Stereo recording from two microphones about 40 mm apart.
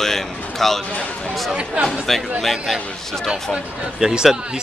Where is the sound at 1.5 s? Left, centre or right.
Right.